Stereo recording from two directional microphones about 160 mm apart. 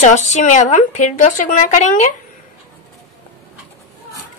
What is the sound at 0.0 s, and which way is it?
Speech, 45° left (ahead or behind).